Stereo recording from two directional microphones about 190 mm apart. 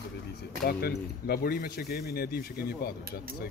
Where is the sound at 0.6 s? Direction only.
55° left (ahead or behind).